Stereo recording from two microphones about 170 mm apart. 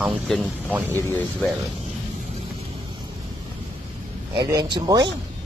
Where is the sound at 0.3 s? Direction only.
Centre (ahead or behind).